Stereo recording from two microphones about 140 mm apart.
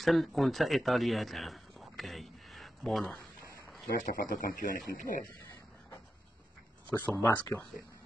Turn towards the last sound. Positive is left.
turn(degrees=5)  # may be behind; listen again after turning